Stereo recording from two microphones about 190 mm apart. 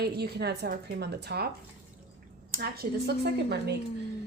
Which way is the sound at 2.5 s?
55° right (ahead or behind).